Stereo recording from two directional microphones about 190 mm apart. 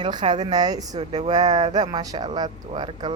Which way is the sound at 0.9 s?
35° right (ahead or behind).